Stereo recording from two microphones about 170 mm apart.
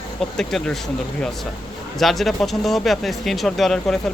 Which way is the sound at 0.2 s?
5° left (ahead or behind).